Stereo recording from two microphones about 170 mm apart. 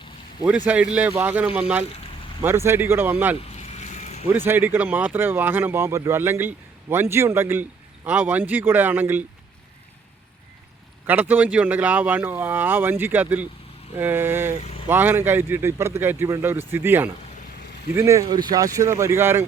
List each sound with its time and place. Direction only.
0.4 s speech: 10° right (ahead or behind)
3.6 s a sound: 40° left (ahead or behind)
4.3 s speech: 10° right (ahead or behind)
11.0 s speech: 10° right (ahead or behind)